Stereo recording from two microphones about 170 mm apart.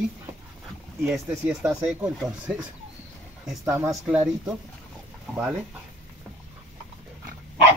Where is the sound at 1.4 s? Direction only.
5° right (ahead or behind).